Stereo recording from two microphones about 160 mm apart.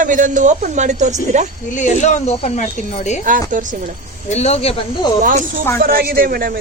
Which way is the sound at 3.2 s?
55° right (ahead or behind).